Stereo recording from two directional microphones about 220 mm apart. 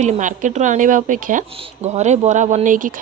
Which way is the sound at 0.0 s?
35° right (ahead or behind).